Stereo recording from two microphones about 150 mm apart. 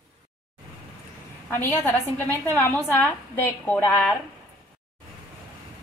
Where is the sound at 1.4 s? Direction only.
15° left (ahead or behind).